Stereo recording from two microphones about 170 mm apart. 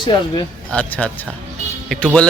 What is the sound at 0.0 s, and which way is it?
Speech, 25° left (ahead or behind).